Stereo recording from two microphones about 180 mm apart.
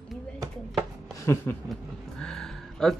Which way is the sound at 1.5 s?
10° left (ahead or behind).